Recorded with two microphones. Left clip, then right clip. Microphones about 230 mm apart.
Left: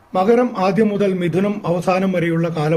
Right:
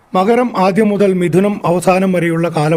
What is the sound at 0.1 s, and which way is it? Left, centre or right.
A man's voice, right.